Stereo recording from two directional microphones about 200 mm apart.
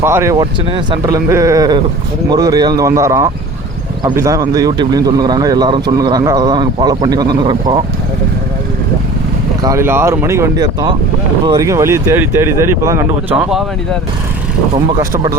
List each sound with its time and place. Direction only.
0.0 s speech: 10° right (ahead or behind)
9.6 s speech: 15° right (ahead or behind)
13.3 s speech: 5° right (ahead or behind)
15.1 s speech: 15° right (ahead or behind)